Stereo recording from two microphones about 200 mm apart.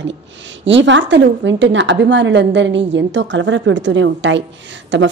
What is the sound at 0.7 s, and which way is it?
Speech, 65° right (ahead or behind).